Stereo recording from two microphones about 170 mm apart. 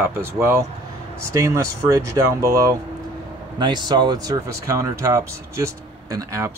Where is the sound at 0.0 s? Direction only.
15° right (ahead or behind).